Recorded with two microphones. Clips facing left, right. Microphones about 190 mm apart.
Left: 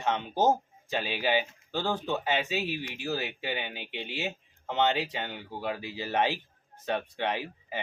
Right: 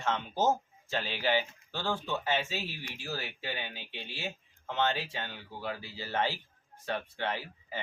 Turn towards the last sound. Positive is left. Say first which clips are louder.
# left 4 dB
turn(degrees=20)  # may be behind; listen again after turning